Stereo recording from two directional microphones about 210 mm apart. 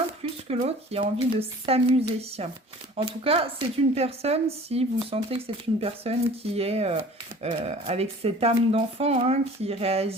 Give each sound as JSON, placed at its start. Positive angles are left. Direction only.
{"t": 0.4, "sound": "speech", "side_deg": -30}